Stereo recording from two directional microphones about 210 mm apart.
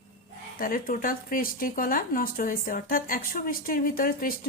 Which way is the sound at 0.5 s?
40° left (ahead or behind).